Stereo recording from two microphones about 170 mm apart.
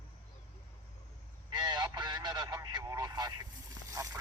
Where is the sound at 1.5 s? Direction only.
25° right (ahead or behind).